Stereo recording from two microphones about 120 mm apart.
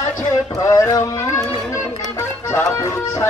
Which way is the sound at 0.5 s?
25° left (ahead or behind).